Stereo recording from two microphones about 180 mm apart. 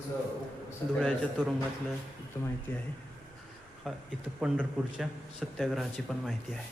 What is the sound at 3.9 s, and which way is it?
A man's voice, centre (ahead or behind).